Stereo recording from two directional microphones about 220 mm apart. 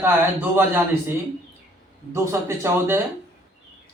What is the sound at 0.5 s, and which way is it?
Speech, 10° right (ahead or behind).